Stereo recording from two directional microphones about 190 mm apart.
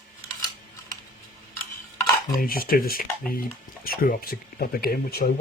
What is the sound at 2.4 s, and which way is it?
Speech, 50° left (ahead or behind).